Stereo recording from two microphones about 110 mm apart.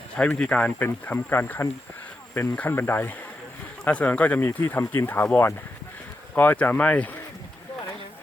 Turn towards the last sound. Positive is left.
turn(degrees=15)  # may be behind; listen again after turning